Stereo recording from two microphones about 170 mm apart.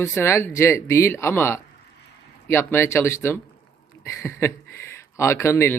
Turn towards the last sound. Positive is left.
turn(degrees=15)  # may be behind; listen again after turning